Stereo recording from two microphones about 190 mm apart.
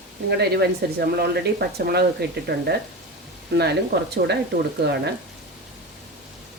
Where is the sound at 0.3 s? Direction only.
60° right (ahead or behind).